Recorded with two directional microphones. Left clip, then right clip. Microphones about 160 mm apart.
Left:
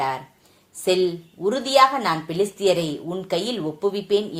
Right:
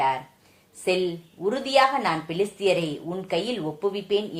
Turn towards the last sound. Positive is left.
turn(degrees=25)  # may be behind; listen again after turning